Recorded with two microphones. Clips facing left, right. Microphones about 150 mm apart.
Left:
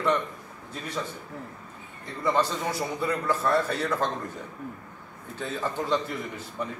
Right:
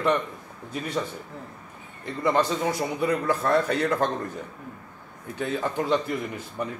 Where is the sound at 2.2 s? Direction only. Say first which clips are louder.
Right 3 dB; 15° right (ahead or behind).